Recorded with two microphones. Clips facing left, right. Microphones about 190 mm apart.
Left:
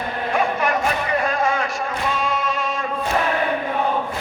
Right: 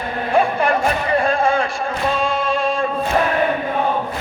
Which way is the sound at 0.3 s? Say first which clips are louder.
Right 5 dB; 30° right (ahead or behind).